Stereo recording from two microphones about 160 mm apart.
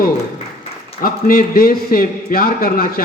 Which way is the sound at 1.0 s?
70° left (ahead or behind).